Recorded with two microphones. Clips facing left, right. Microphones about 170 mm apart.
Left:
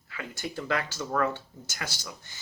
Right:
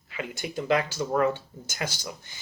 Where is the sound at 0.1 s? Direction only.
20° right (ahead or behind).